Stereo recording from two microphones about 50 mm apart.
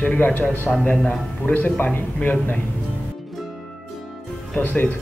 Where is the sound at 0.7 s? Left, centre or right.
Centre.